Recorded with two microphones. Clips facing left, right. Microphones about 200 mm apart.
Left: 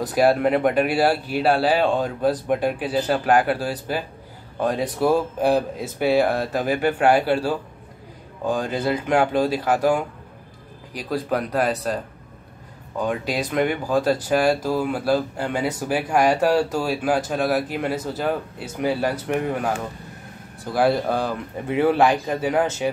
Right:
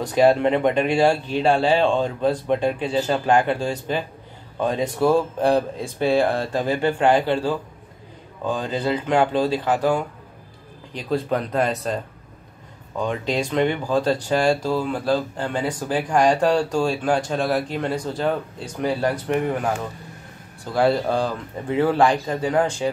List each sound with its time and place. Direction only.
0.0 s speech: 5° left (ahead or behind)
13.0 s speech: 5° left (ahead or behind)
20.7 s speech: 5° left (ahead or behind)
21.2 s speech: 15° left (ahead or behind)